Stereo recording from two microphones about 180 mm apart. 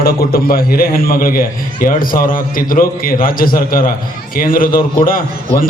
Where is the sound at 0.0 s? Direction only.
55° left (ahead or behind).